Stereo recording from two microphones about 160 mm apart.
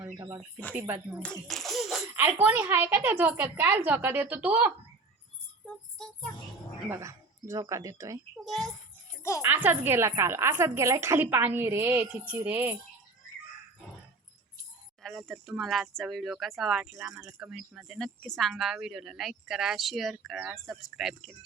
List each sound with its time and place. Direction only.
0.7 s a woman's voice: 15° right (ahead or behind)
1.2 s a sound: 5° left (ahead or behind)
2.1 s a woman's voice: 10° right (ahead or behind)
6.8 s speech: 15° right (ahead or behind)
8.4 s speech: centre (ahead or behind)
9.4 s a woman's voice: 10° right (ahead or behind)
15.0 s speech: centre (ahead or behind)